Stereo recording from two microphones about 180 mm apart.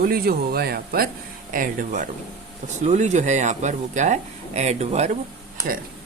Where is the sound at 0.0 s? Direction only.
60° right (ahead or behind).